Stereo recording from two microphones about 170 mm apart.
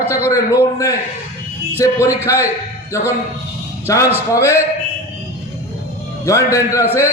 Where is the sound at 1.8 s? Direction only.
15° left (ahead or behind).